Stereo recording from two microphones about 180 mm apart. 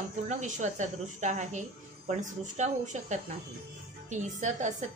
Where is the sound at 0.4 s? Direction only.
40° right (ahead or behind).